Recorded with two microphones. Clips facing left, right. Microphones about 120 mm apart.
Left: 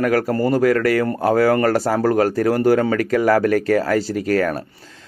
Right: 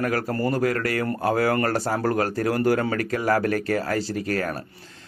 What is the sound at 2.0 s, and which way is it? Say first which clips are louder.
Speech: left 7 dB; 40° left (ahead or behind).